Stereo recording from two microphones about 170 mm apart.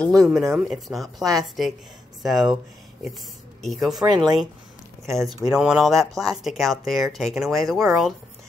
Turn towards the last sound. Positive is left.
turn(degrees=0)  # may be behind; listen again after turning